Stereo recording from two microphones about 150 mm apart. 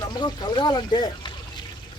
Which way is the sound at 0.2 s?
30° left (ahead or behind).